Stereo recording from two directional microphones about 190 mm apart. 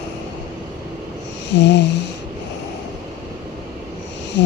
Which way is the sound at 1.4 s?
65° left (ahead or behind).